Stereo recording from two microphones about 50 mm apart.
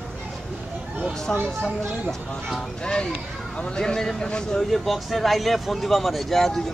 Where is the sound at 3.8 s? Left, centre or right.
Centre.